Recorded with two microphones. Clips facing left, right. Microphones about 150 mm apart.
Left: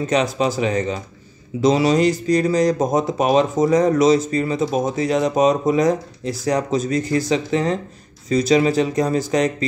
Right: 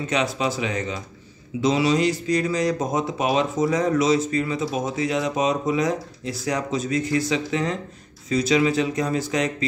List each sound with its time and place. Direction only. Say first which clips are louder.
0.0 s speech: left 5 dB; 40° left (ahead or behind)